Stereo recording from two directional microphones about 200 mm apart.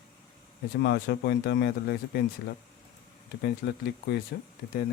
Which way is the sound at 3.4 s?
55° left (ahead or behind).